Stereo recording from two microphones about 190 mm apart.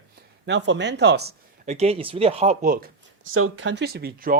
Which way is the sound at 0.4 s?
70° right (ahead or behind).